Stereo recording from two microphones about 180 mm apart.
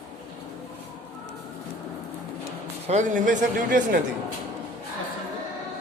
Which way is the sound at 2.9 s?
45° right (ahead or behind).